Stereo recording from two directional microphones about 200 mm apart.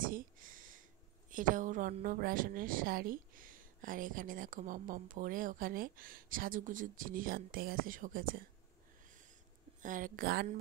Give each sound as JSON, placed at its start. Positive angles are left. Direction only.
{"t": 0.0, "sound": "a sound", "side_deg": -45}
{"t": 1.3, "sound": "a woman's voice", "side_deg": -40}
{"t": 9.8, "sound": "a woman's voice", "side_deg": -40}